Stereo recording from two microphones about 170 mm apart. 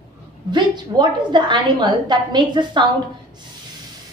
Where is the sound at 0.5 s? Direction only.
25° right (ahead or behind).